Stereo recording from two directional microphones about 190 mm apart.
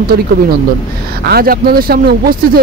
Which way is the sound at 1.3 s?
50° right (ahead or behind).